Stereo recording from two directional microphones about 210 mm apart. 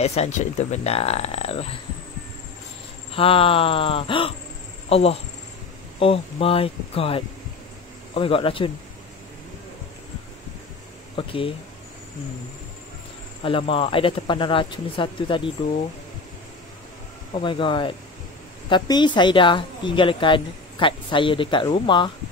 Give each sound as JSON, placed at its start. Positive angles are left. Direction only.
{"t": 0.0, "sound": "a woman's voice", "side_deg": 30}
{"t": 3.1, "sound": "a woman's voice", "side_deg": 25}
{"t": 11.1, "sound": "a woman's voice", "side_deg": 25}
{"t": 13.4, "sound": "a woman's voice", "side_deg": 25}
{"t": 17.4, "sound": "a woman's voice", "side_deg": 25}